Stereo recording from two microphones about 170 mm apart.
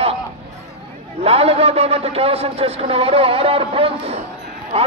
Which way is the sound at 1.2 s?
35° right (ahead or behind).